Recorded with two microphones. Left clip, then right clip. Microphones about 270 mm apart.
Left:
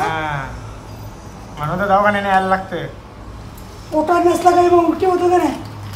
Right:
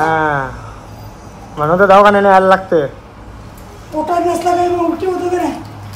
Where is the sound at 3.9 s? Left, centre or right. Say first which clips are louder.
Left 1 dB; centre.